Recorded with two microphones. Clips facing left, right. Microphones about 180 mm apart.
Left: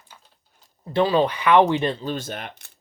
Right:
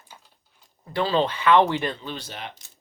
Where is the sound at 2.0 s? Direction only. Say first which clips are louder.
Left 6 dB; 45° left (ahead or behind).